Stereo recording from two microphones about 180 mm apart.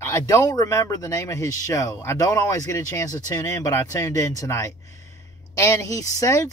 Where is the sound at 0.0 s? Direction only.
15° left (ahead or behind).